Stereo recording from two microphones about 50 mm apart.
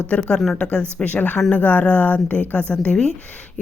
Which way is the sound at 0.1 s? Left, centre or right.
Left.